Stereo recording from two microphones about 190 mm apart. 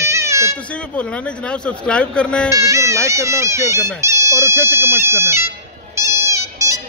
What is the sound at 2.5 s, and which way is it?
Speech, 15° right (ahead or behind).